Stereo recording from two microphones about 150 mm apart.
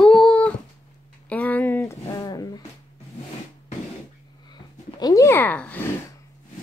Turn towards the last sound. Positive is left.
turn(degrees=10)  # may be behind; listen again after turning